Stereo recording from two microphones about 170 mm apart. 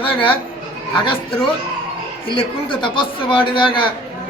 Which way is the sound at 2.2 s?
30° left (ahead or behind).